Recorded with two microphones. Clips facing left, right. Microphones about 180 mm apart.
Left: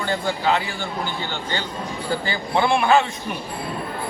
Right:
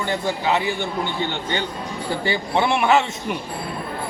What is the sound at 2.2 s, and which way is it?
Speech, 20° right (ahead or behind).